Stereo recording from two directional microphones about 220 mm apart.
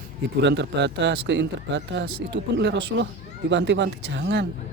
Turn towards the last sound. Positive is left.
turn(degrees=-50)  # may be behind; listen again after turning